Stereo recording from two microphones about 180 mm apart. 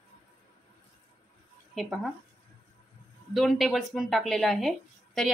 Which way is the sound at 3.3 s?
Centre (ahead or behind).